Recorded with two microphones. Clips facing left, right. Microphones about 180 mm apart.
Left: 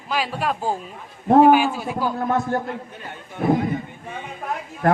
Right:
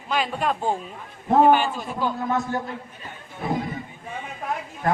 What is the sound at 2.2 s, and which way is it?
Speech, 55° left (ahead or behind).